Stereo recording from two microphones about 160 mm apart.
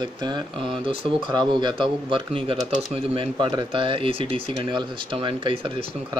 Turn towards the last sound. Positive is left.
turn(degrees=-35)  # may be behind; listen again after turning